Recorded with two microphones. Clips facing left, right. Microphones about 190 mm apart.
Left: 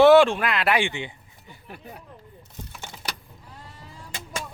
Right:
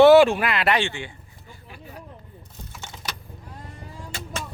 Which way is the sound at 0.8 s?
15° left (ahead or behind).